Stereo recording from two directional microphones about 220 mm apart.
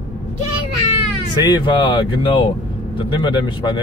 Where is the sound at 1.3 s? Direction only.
20° left (ahead or behind).